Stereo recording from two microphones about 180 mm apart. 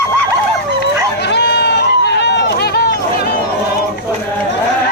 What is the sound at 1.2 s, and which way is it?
Run, 70° left (ahead or behind).